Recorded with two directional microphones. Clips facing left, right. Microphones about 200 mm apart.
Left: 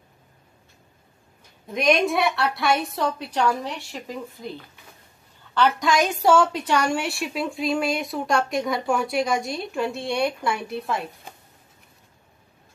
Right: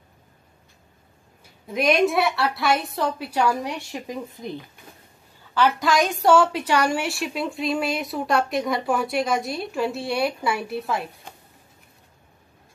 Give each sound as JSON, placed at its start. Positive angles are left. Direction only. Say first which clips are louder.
{"t": 1.7, "sound": "a woman's voice", "louder": "right 1 dB", "side_deg": -5}
{"t": 5.5, "sound": "a woman's voice", "louder": "even", "side_deg": -5}